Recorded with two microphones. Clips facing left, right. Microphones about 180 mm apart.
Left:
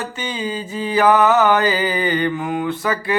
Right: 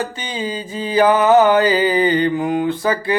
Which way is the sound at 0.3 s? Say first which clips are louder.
Right 2 dB; 20° right (ahead or behind).